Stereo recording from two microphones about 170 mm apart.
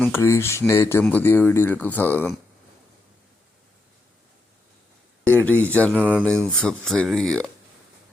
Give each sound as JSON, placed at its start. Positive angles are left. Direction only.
{"t": 0.0, "sound": "speech", "side_deg": 15}
{"t": 5.4, "sound": "speech", "side_deg": 10}
{"t": 5.9, "sound": "speech", "side_deg": -10}
{"t": 6.4, "sound": "speech", "side_deg": 5}